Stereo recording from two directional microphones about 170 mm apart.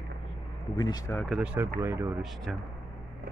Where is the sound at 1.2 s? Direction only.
5° right (ahead or behind).